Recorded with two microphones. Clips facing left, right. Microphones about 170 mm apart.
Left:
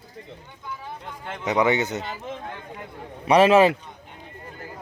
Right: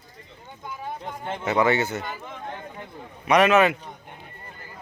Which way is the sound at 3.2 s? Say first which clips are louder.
Left 3 dB; 30° left (ahead or behind).